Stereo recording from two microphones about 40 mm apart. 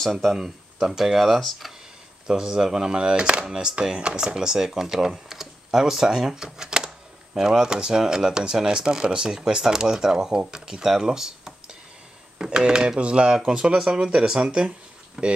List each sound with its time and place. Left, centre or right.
0.0 s speech: centre
0.3 s speech: centre
2.2 s speech: centre
4.6 s speech: centre
15.2 s speech: centre